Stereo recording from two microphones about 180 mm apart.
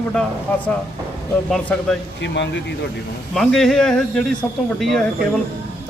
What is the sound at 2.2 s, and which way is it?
Speech, 75° left (ahead or behind).